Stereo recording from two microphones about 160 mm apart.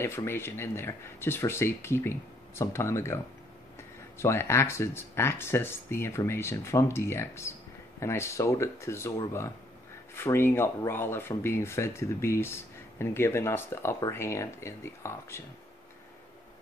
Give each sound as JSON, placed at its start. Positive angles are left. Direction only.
{"t": 0.0, "sound": "speech", "side_deg": 15}
{"t": 4.2, "sound": "speech", "side_deg": 15}